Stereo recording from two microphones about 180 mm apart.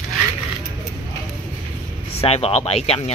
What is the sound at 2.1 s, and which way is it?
Speech, 35° left (ahead or behind).